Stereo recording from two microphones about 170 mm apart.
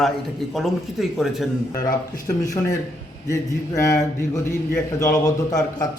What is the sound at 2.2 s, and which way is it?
Speech, 20° left (ahead or behind).